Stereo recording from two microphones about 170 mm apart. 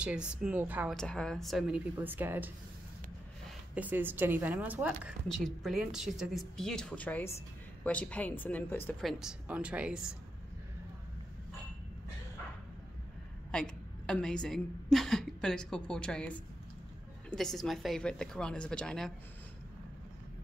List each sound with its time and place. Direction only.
0.0 s a woman's voice: 5° right (ahead or behind)
0.9 s speech: 5° left (ahead or behind)
2.0 s a woman's voice: 10° right (ahead or behind); by 8.9 s 10° left (ahead or behind)
9.0 s speech: 5° right (ahead or behind)
13.5 s a woman's voice: 5° left (ahead or behind)